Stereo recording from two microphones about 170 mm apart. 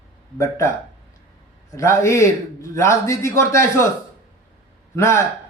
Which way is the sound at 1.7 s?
15° left (ahead or behind).